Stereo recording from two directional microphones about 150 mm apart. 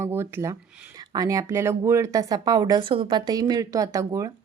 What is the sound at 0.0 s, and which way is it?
Speech, 15° right (ahead or behind).